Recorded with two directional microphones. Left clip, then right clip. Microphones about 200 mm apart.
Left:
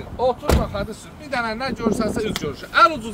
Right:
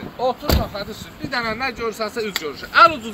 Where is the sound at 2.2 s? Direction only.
65° left (ahead or behind).